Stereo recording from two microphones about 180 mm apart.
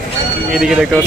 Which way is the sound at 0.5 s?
Centre (ahead or behind).